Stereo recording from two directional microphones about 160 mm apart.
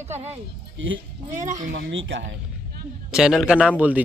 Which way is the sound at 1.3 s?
50° right (ahead or behind).